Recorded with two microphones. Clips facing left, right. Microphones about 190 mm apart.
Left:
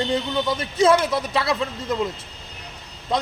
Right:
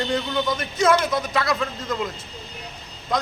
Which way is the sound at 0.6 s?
30° left (ahead or behind).